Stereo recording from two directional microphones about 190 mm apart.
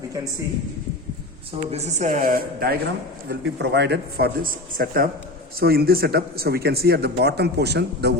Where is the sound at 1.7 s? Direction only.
35° right (ahead or behind).